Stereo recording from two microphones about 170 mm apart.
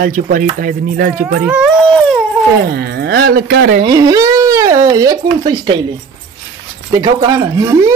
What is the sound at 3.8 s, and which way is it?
Speech, 20° right (ahead or behind).